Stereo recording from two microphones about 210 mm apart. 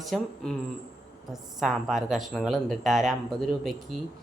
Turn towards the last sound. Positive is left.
turn(degrees=0)  # may be behind; listen again after turning